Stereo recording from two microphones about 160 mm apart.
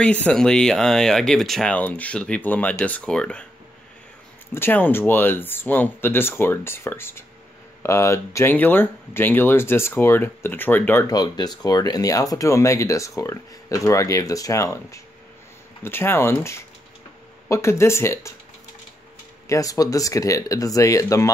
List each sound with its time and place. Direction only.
0.0 s speech: 10° left (ahead or behind)
4.6 s speech: 15° left (ahead or behind)
11.1 s speech: 25° left (ahead or behind)
19.4 s speech: 20° left (ahead or behind)